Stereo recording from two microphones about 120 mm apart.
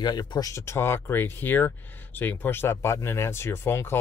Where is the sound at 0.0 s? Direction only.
35° left (ahead or behind).